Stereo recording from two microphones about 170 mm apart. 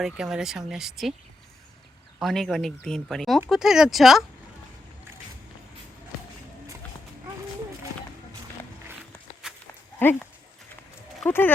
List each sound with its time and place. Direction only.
0.0 s speech: 5° right (ahead or behind)
2.1 s speech: centre (ahead or behind)
9.4 s livestock: 5° right (ahead or behind)
10.0 s speech: 10° left (ahead or behind)
11.3 s speech: 15° left (ahead or behind)